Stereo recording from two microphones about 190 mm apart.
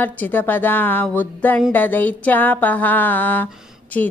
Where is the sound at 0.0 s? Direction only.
10° left (ahead or behind).